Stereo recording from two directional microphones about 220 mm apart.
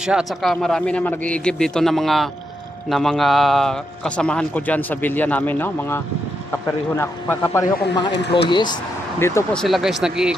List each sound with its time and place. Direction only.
0.0 s a man's voice: 5° right (ahead or behind)